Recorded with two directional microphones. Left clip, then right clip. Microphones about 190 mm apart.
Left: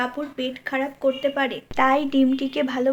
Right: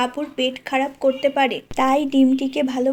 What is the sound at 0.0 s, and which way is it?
A woman's voice, 35° right (ahead or behind).